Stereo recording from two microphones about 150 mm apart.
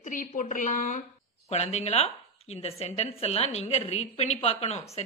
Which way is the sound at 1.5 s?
45° left (ahead or behind).